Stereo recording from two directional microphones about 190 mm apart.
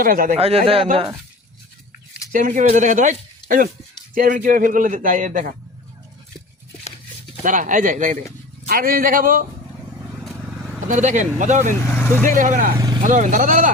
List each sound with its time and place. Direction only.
0.0 s a man's voice: 50° right (ahead or behind)
0.3 s speech: 30° right (ahead or behind)
2.3 s a man's voice: 40° right (ahead or behind)
7.4 s a man's voice: 45° right (ahead or behind)
10.2 s vehicle: 5° left (ahead or behind)
10.8 s speech: 40° right (ahead or behind)
11.9 s speech: 10° left (ahead or behind)
12.2 s a man's voice: 45° right (ahead or behind)
12.7 s speech: 20° right (ahead or behind)
13.0 s speech: 40° right (ahead or behind)